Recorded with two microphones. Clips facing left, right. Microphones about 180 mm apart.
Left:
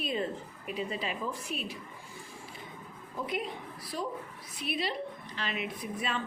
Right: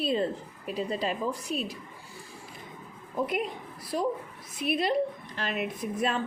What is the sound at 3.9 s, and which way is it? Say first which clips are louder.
A woman's voice: right 7 dB; 50° right (ahead or behind).